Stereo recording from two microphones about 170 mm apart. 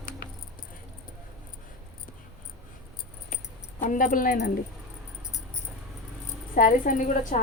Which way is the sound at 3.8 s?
50° left (ahead or behind).